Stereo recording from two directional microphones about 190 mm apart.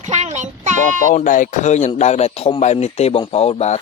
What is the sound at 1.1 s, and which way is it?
Speech, 45° left (ahead or behind).